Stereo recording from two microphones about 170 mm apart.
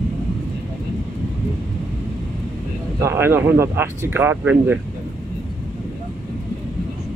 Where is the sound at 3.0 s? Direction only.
15° right (ahead or behind).